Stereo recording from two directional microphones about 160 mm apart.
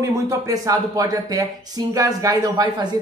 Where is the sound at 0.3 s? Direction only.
20° right (ahead or behind).